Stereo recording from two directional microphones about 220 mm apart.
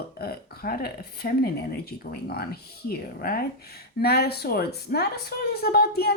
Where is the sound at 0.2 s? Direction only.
45° left (ahead or behind).